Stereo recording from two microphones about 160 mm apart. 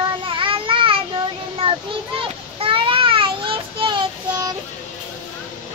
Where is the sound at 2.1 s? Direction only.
35° right (ahead or behind).